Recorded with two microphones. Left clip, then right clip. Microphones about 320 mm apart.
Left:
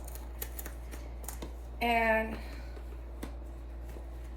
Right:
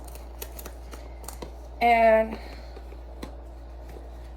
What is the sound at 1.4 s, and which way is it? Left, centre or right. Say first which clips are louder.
Computer keyboard: right 10 dB; right.